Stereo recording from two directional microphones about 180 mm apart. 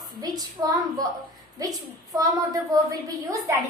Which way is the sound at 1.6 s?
20° right (ahead or behind).